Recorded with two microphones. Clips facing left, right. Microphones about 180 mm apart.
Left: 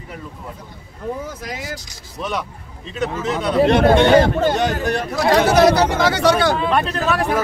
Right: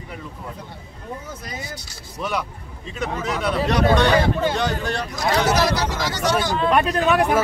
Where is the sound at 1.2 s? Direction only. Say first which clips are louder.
Left 5 dB; 90° left.